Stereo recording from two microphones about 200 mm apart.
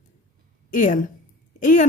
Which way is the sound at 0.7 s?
40° left (ahead or behind).